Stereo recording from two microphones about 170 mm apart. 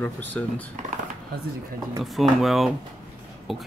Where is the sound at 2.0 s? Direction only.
Centre (ahead or behind).